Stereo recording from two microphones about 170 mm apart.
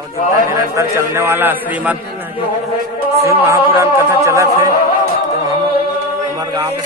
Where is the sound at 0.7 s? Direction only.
15° right (ahead or behind).